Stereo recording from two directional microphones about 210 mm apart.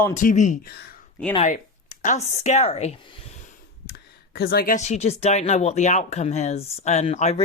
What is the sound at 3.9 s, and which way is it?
A woman's voice, 50° left (ahead or behind).